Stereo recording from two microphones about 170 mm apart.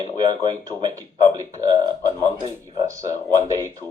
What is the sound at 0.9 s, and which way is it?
Speech, 20° right (ahead or behind).